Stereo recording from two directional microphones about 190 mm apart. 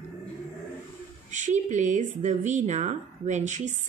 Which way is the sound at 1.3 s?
40° right (ahead or behind).